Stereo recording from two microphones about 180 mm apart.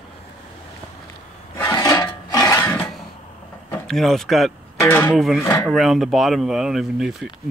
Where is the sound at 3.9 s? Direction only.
Centre (ahead or behind).